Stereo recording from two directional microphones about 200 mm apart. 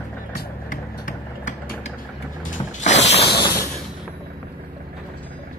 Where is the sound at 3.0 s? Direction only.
60° left (ahead or behind).